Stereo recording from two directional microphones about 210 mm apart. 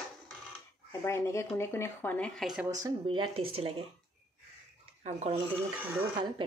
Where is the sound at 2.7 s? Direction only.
15° right (ahead or behind).